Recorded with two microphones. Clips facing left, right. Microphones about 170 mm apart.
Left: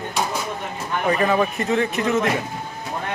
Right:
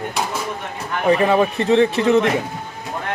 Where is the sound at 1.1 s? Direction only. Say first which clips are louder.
Right 5 dB; 30° right (ahead or behind).